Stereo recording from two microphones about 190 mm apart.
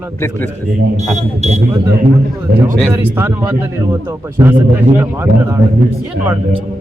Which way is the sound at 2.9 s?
10° right (ahead or behind).